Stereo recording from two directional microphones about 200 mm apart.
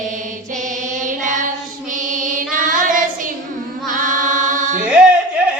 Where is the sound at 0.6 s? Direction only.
40° right (ahead or behind).